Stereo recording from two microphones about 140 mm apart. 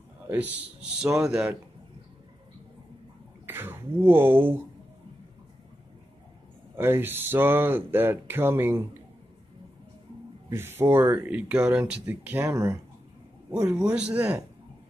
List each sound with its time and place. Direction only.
0.3 s speech: 10° right (ahead or behind)
3.4 s speech: 15° right (ahead or behind)
6.8 s speech: 15° right (ahead or behind)
10.5 s speech: 15° right (ahead or behind)